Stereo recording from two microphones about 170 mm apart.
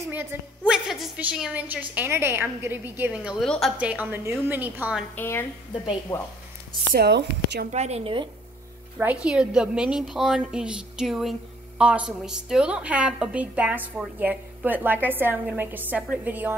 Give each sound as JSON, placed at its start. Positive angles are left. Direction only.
{"t": 0.0, "sound": "a woman's voice", "side_deg": -15}
{"t": 3.8, "sound": "a woman's voice", "side_deg": -10}
{"t": 5.1, "sound": "a woman's voice", "side_deg": 15}
{"t": 6.9, "sound": "speech", "side_deg": -75}
{"t": 7.7, "sound": "a woman's voice", "side_deg": -40}
{"t": 8.9, "sound": "a woman's voice", "side_deg": -5}